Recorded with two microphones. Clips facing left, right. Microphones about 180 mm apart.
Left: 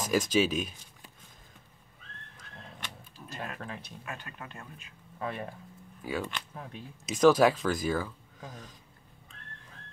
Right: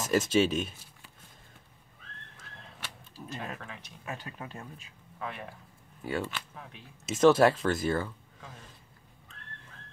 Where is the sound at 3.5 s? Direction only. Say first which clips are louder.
Left 4 dB; 35° left (ahead or behind).